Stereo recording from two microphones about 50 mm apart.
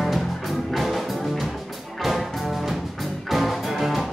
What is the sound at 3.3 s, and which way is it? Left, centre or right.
Music, centre.